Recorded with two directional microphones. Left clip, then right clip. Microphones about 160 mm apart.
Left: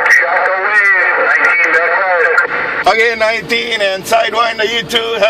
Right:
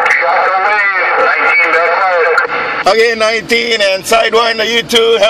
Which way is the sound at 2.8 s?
30° right (ahead or behind).